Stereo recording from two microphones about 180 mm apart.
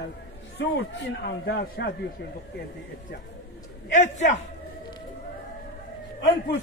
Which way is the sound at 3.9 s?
40° left (ahead or behind).